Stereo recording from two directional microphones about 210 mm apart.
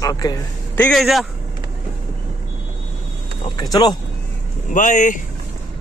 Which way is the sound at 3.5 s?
20° left (ahead or behind).